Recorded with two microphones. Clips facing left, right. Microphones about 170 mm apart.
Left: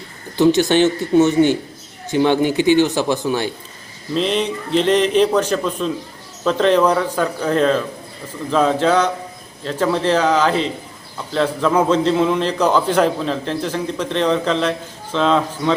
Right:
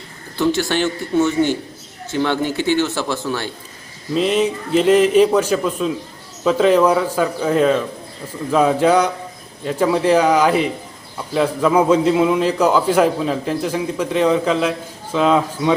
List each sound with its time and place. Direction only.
0.3 s speech: 20° left (ahead or behind)
4.1 s a man's voice: 5° right (ahead or behind)